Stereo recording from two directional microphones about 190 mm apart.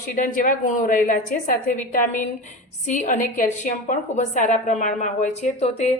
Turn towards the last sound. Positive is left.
turn(degrees=35)  # may be behind; listen again after turning